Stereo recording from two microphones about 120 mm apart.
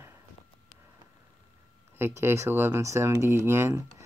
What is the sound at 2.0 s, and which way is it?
Speech, 20° right (ahead or behind).